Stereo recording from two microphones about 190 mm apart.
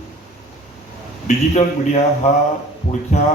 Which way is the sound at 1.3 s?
40° left (ahead or behind).